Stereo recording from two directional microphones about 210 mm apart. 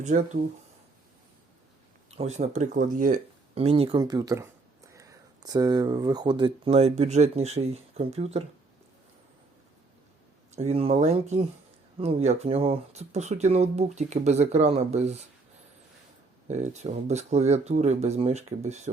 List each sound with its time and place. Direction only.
2.0 s speech: 30° right (ahead or behind)
10.5 s speech: 30° right (ahead or behind)
16.5 s speech: 35° right (ahead or behind)